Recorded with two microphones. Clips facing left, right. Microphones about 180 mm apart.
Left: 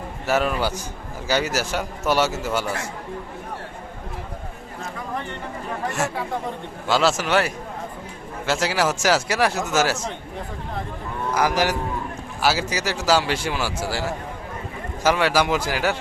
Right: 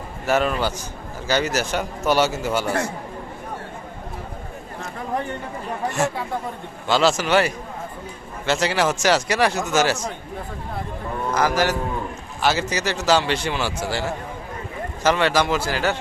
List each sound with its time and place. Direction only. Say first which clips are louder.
0.3 s speech: right 1 dB; 5° left (ahead or behind)
6.8 s speech: right 1 dB; 5° left (ahead or behind)
11.3 s a man's voice: even; 10° left (ahead or behind)